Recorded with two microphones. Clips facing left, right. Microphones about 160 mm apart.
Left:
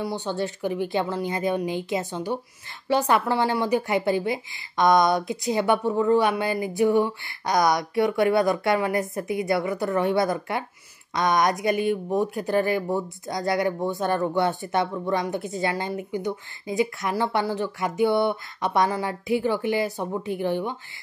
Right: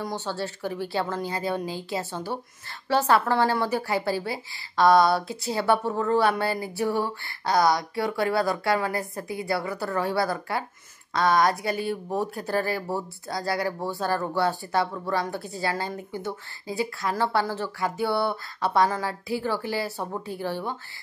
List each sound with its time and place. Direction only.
0.0 s a woman's voice: 15° left (ahead or behind)